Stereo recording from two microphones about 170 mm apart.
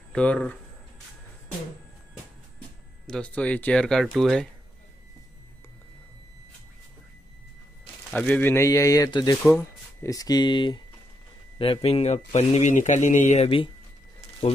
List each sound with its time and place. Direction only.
0.1 s speech: 5° left (ahead or behind)
3.1 s speech: 5° left (ahead or behind)
8.1 s a man's voice: 5° left (ahead or behind); by 13.7 s 35° left (ahead or behind)